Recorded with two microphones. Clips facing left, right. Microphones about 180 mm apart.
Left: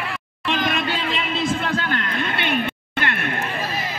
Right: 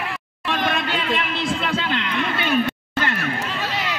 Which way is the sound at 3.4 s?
80° right.